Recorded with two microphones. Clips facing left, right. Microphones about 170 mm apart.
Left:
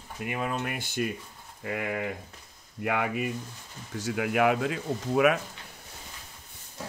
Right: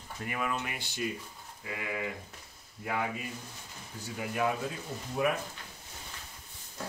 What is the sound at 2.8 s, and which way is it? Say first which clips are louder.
Speech: left 6 dB; 75° left (ahead or behind).